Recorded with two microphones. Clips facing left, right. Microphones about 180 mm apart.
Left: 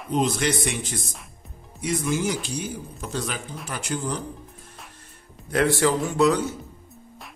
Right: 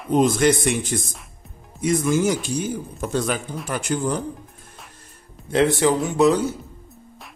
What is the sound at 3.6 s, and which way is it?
Speech, 50° right (ahead or behind).